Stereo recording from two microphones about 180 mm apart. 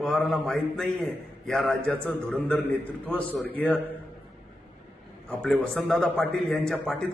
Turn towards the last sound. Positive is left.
turn(degrees=0)  # may be behind; listen again after turning